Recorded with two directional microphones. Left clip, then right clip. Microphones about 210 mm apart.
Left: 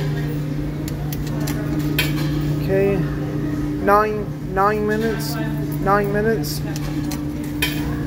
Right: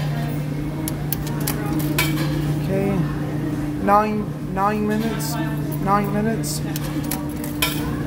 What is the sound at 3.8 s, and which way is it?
Speech, centre (ahead or behind).